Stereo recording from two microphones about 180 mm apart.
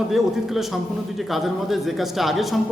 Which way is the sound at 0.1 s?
Centre (ahead or behind).